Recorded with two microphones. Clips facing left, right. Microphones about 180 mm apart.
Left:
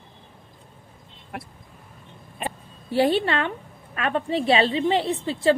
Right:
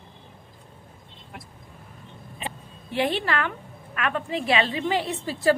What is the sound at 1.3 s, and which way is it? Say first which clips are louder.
Vehicle: left 7 dB; 70° left (ahead or behind).